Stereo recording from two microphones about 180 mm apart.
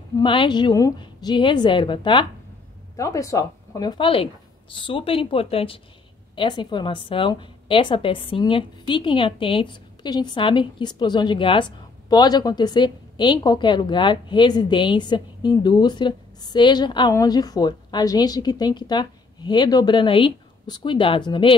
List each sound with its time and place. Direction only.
0.2 s a woman's voice: 25° left (ahead or behind)